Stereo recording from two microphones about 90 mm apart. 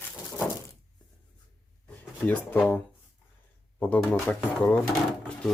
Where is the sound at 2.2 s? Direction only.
20° left (ahead or behind).